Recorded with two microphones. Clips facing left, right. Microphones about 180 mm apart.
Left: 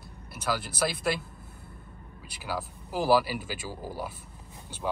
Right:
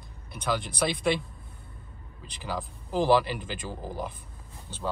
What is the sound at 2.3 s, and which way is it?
Speech, 5° left (ahead or behind).